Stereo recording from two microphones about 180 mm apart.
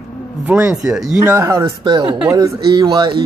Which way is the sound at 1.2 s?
15° right (ahead or behind).